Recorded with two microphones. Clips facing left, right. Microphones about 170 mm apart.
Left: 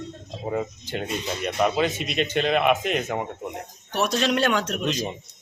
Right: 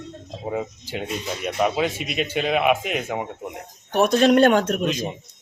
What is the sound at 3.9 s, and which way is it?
Speech, 50° right (ahead or behind).